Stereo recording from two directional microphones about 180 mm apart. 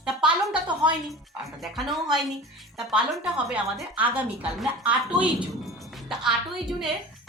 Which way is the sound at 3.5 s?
10° right (ahead or behind).